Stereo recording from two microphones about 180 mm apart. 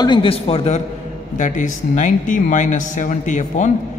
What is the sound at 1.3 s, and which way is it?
Speech, 45° left (ahead or behind).